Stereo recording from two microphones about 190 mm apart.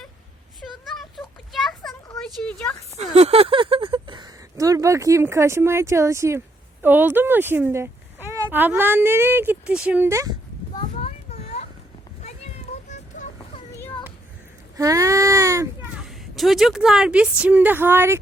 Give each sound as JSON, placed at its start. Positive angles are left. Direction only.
{"t": 0.7, "sound": "a sound", "side_deg": 0}
{"t": 2.4, "sound": "a woman's voice", "side_deg": 5}
{"t": 3.0, "sound": "speech", "side_deg": -30}
{"t": 10.8, "sound": "a sound", "side_deg": 35}
{"t": 12.9, "sound": "vehicle", "side_deg": 40}
{"t": 14.8, "sound": "baby cry", "side_deg": -15}
{"t": 16.0, "sound": "a woman's voice", "side_deg": 0}